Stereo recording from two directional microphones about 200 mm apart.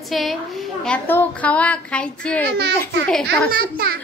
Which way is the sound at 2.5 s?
60° right (ahead or behind).